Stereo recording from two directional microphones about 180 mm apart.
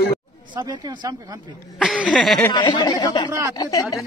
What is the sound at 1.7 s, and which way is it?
Speech, centre (ahead or behind).